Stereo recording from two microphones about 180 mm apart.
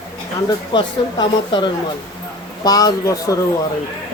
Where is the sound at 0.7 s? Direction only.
25° left (ahead or behind).